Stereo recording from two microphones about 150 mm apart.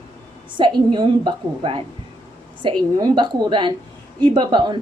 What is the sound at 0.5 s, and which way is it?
A woman's voice, 35° right (ahead or behind).